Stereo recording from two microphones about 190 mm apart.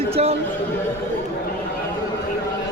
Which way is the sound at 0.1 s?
30° right (ahead or behind).